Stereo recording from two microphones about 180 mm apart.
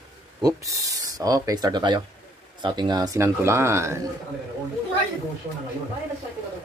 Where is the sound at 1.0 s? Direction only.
20° right (ahead or behind).